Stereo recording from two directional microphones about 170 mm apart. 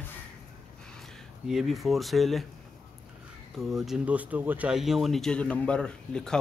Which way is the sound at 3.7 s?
Centre (ahead or behind).